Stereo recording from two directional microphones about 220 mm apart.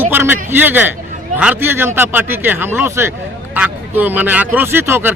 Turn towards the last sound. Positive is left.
turn(degrees=-10)  # may be behind; listen again after turning